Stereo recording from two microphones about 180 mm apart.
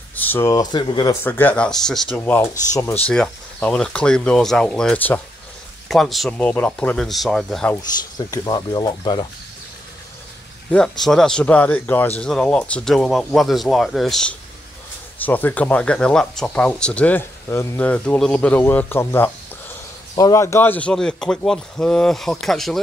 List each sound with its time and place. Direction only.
0.1 s speech: 10° left (ahead or behind); by 1.1 s 25° left (ahead or behind)
1.2 s speech: 10° left (ahead or behind)
7.7 s speech: 20° left (ahead or behind)
10.7 s speech: centre (ahead or behind)